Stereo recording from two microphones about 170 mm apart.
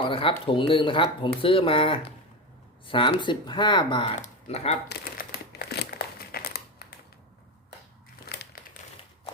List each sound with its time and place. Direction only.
0.0 s speech: 30° left (ahead or behind)
4.1 s speech: 45° left (ahead or behind)
4.9 s crumpling: 75° left (ahead or behind)
8.5 s a sound: 55° left (ahead or behind)